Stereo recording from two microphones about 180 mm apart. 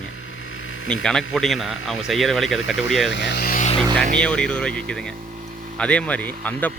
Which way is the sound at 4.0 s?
5° left (ahead or behind).